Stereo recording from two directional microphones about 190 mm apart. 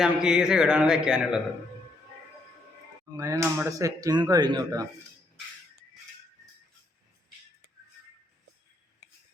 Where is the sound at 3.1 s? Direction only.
15° right (ahead or behind).